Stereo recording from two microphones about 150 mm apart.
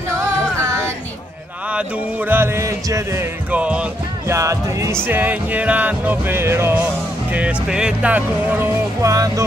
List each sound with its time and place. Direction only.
0.1 s music: 20° right (ahead or behind)
2.2 s music: 15° right (ahead or behind)
4.3 s music: 20° right (ahead or behind)
5.0 s speech: 10° right (ahead or behind)